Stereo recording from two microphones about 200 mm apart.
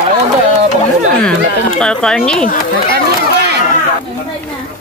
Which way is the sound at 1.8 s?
5° left (ahead or behind).